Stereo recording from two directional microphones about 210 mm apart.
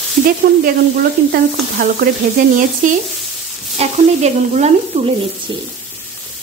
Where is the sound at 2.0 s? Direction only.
45° right (ahead or behind).